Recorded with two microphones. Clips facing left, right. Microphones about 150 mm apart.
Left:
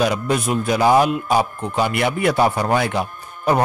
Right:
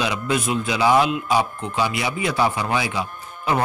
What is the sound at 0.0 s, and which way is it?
A man's voice, 45° left (ahead or behind).